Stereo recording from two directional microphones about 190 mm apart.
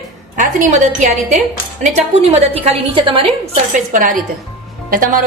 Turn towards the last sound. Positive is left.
turn(degrees=-45)  # may be behind; listen again after turning